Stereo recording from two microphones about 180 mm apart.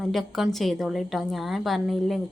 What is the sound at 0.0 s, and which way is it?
A woman's voice, centre (ahead or behind).